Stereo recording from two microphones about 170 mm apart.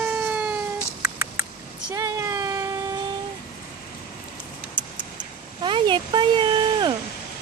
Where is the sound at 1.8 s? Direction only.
20° right (ahead or behind).